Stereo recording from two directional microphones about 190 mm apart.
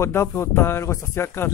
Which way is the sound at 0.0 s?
15° left (ahead or behind).